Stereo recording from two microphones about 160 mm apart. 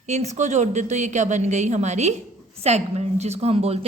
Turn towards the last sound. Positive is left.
turn(degrees=-40)  # may be behind; listen again after turning